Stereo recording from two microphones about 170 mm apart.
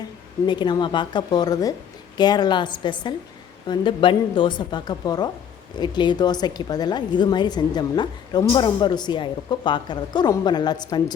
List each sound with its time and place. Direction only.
0.4 s a woman's voice: 25° left (ahead or behind)